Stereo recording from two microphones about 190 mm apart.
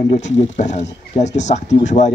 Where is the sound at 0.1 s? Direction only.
40° left (ahead or behind).